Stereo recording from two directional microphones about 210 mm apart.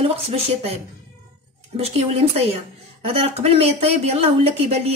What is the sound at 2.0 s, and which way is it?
Speech, 30° right (ahead or behind).